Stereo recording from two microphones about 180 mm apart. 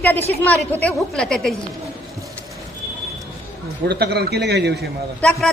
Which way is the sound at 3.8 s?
65° right (ahead or behind).